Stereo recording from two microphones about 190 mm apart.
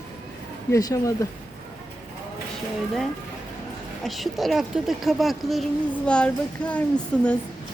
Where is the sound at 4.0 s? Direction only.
Centre (ahead or behind).